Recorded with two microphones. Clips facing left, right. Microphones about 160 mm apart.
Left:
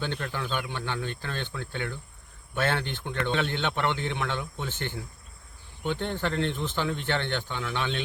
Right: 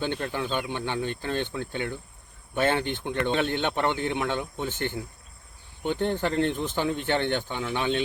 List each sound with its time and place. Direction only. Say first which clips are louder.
0.0 s speech: right 3 dB; 20° right (ahead or behind)
6.1 s speech: right 5 dB; 15° right (ahead or behind)